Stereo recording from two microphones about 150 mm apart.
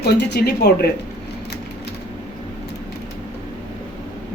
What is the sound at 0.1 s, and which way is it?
Speech, 90° left.